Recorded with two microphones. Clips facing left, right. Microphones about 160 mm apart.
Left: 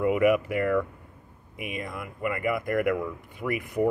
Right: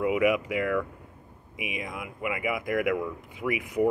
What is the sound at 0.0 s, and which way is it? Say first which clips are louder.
Speech: left 2 dB; 10° right (ahead or behind).